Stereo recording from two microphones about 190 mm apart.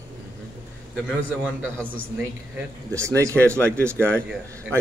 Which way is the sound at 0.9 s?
5° right (ahead or behind).